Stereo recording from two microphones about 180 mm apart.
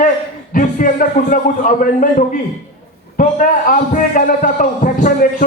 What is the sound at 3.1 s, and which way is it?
A man's voice, 50° left (ahead or behind).